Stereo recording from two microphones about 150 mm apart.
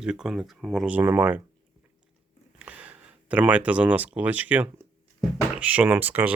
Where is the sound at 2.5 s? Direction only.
10° right (ahead or behind).